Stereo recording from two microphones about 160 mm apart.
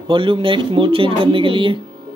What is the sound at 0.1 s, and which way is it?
Speech, 30° right (ahead or behind).